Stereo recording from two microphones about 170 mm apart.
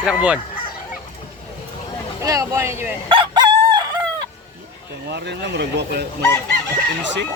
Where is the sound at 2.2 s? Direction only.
20° right (ahead or behind).